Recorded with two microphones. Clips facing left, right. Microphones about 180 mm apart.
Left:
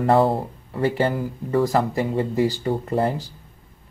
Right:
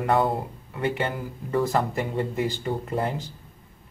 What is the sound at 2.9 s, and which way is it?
Speech, 35° left (ahead or behind).